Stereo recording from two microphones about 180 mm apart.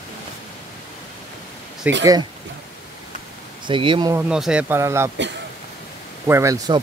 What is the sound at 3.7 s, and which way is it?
Speech, 30° right (ahead or behind).